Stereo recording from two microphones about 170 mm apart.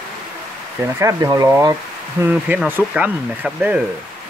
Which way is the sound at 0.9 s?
20° right (ahead or behind).